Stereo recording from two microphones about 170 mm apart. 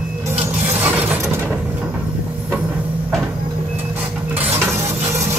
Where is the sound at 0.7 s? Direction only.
10° right (ahead or behind).